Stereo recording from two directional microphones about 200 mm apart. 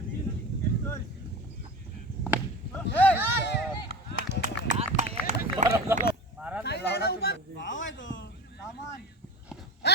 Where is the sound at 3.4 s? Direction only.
60° left (ahead or behind).